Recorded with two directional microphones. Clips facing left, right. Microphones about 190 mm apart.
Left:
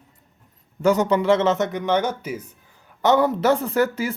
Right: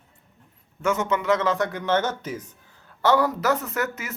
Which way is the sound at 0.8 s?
35° left (ahead or behind).